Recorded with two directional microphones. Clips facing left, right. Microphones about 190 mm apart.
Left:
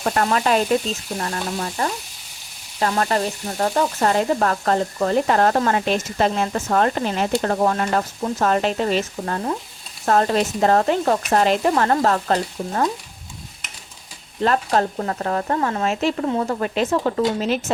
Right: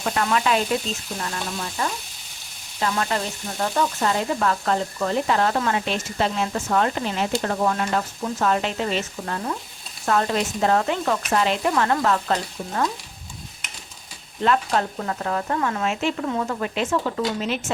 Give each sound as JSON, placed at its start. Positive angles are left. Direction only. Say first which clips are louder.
{"t": 0.0, "sound": "frying", "louder": "left 3 dB", "side_deg": 45}
{"t": 1.2, "sound": "speech", "louder": "left 5 dB", "side_deg": 40}
{"t": 2.8, "sound": "frying", "louder": "left 4 dB", "side_deg": 45}
{"t": 10.1, "sound": "speech", "louder": "left 4 dB", "side_deg": 40}
{"t": 14.4, "sound": "speech", "louder": "left 2 dB", "side_deg": 40}